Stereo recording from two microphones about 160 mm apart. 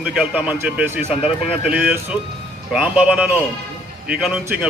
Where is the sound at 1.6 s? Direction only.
10° right (ahead or behind).